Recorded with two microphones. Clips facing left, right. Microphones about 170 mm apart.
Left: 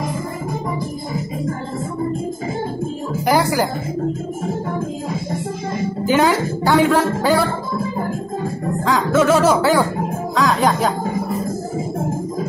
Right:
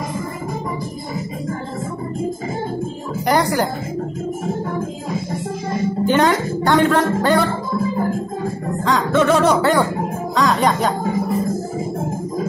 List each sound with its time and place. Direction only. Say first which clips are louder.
3.3 s speech: even; 5° left (ahead or behind)
6.0 s speech: left 1 dB; 5° left (ahead or behind)
8.8 s speech: even; 5° left (ahead or behind)